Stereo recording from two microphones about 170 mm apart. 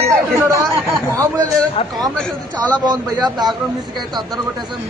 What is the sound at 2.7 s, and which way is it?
Speech, 25° right (ahead or behind).